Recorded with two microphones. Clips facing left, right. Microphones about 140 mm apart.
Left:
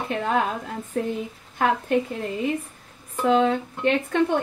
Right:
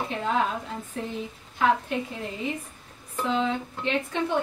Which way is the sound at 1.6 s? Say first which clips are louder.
Even; 50° left (ahead or behind).